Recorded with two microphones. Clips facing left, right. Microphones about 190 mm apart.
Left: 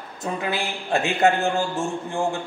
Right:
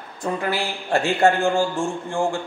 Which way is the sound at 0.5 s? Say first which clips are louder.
Right 2 dB; 20° left (ahead or behind).